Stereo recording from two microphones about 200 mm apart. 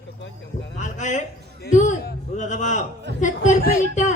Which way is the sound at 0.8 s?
35° left (ahead or behind).